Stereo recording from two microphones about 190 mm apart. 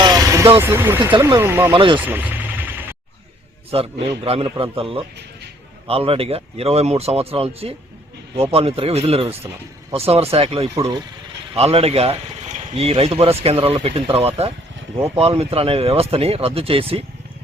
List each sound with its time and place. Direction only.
0.0 s vehicle: 20° right (ahead or behind)
0.6 s speech: 10° right (ahead or behind)
1.7 s a man's voice: 25° right (ahead or behind)
2.0 s vehicle: 10° right (ahead or behind)
3.7 s a man's voice: 30° right (ahead or behind)
10.8 s speech: 20° right (ahead or behind)
11.5 s a man's voice: 30° right (ahead or behind)